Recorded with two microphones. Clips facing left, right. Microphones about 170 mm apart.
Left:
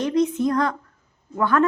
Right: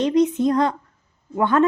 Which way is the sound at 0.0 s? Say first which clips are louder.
Right 3 dB; 20° right (ahead or behind).